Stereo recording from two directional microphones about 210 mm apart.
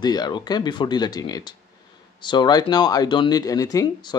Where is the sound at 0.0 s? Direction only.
20° left (ahead or behind).